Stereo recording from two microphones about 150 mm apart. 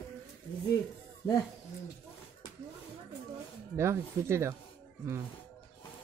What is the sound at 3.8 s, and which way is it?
Speech, 20° right (ahead or behind).